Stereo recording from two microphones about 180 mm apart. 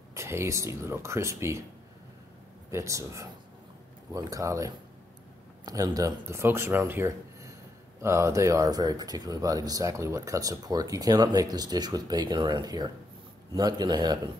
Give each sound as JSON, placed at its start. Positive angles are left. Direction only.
{"t": 0.1, "sound": "speech", "side_deg": -15}
{"t": 2.7, "sound": "speech", "side_deg": -15}